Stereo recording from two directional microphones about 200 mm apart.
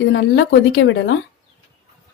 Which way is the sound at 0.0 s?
65° left (ahead or behind).